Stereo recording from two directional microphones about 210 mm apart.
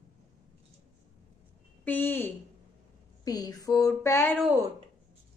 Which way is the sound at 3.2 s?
20° left (ahead or behind).